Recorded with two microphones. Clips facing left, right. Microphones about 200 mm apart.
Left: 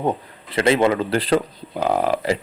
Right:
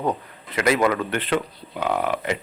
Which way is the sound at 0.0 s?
25° left (ahead or behind).